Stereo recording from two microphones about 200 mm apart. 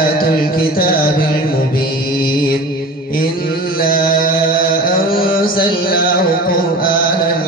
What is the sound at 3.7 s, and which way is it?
Mantra, 45° left (ahead or behind).